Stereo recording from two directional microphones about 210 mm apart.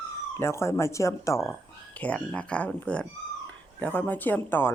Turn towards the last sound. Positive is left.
turn(degrees=10)  # may be behind; listen again after turning